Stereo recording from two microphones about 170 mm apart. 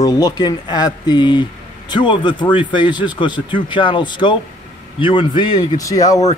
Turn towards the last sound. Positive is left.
turn(degrees=20)  # may be behind; listen again after turning